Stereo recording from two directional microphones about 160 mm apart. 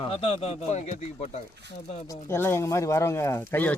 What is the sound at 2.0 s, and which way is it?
Speech, 15° left (ahead or behind).